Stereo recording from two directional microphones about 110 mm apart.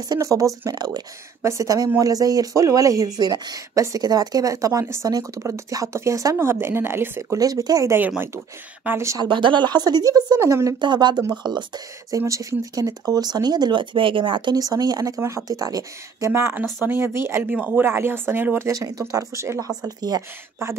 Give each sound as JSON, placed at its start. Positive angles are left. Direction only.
{"t": 0.1, "sound": "speech", "side_deg": -30}
{"t": 9.2, "sound": "speech", "side_deg": -45}
{"t": 10.8, "sound": "speech", "side_deg": -45}
{"t": 12.2, "sound": "speech", "side_deg": -30}
{"t": 14.5, "sound": "speech", "side_deg": -35}
{"t": 16.3, "sound": "speech", "side_deg": -20}
{"t": 20.0, "sound": "speech", "side_deg": -35}